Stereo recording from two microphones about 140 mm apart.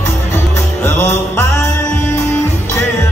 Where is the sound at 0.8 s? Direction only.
15° left (ahead or behind).